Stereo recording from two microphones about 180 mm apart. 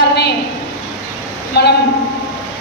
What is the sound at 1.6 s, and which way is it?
Speech, 70° left (ahead or behind).